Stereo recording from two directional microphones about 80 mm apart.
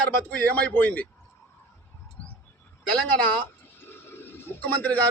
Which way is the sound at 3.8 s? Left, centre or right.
Left.